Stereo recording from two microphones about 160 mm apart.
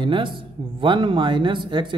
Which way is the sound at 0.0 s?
30° right (ahead or behind).